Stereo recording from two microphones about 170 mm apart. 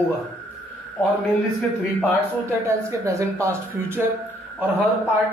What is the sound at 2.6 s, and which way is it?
A man's voice, 15° right (ahead or behind).